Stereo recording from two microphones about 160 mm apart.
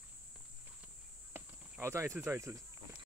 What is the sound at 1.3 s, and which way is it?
Speech, 15° right (ahead or behind).